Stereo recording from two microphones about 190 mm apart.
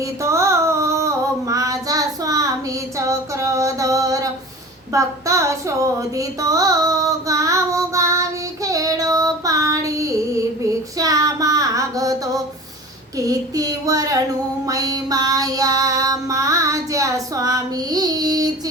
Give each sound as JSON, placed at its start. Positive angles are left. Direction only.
{"t": 0.2, "sound": "female singing", "side_deg": -15}
{"t": 4.9, "sound": "a sound", "side_deg": -15}
{"t": 10.9, "sound": "child singing", "side_deg": -20}
{"t": 14.7, "sound": "female singing", "side_deg": -20}